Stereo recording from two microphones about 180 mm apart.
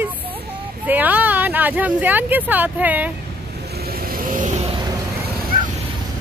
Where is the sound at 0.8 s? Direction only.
10° right (ahead or behind).